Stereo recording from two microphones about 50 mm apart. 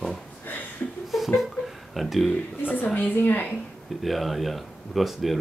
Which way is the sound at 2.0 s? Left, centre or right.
Centre.